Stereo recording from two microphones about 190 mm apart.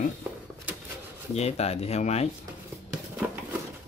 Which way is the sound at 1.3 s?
35° left (ahead or behind).